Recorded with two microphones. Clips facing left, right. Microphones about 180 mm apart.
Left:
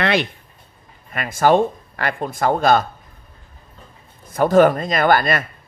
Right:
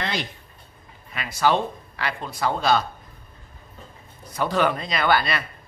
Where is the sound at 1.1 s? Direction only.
50° left (ahead or behind).